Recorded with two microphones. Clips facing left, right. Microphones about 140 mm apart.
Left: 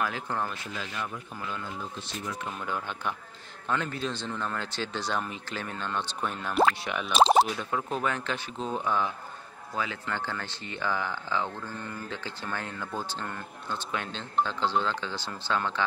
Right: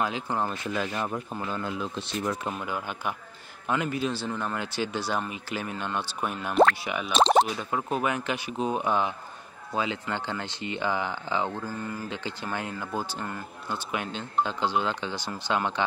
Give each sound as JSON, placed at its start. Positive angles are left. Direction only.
{"t": 0.0, "sound": "speech", "side_deg": -20}
{"t": 0.9, "sound": "speech", "side_deg": -40}
{"t": 1.6, "sound": "speech", "side_deg": -80}
{"t": 2.6, "sound": "speech", "side_deg": -10}